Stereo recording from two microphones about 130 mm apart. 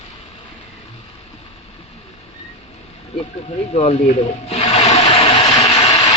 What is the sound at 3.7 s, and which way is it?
Speech, 55° left (ahead or behind).